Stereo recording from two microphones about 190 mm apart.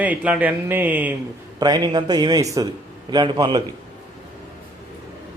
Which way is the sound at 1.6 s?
20° right (ahead or behind).